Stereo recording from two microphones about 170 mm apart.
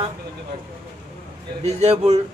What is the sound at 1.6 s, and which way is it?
Speech, 40° right (ahead or behind).